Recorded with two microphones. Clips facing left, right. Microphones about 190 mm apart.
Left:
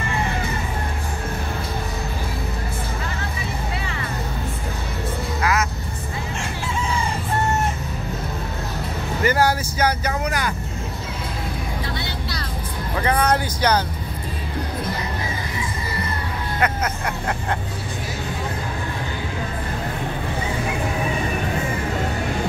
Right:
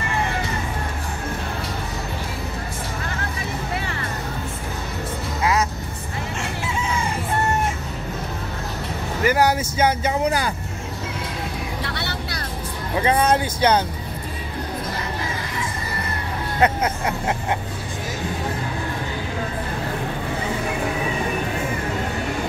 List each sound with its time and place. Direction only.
5.4 s music: 25° right (ahead or behind)
9.2 s vehicle: 15° right (ahead or behind)
11.8 s vehicle: 65° right (ahead or behind)
12.9 s speech: 20° right (ahead or behind)
16.5 s music: 25° right (ahead or behind)